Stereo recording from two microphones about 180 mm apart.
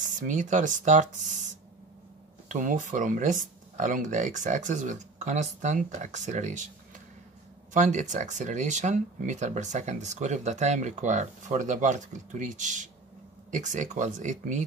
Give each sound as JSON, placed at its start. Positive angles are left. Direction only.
{"t": 0.0, "sound": "speech", "side_deg": -45}
{"t": 7.7, "sound": "speech", "side_deg": -45}